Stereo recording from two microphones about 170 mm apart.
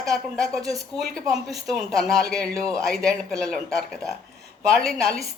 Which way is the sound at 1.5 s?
Centre (ahead or behind).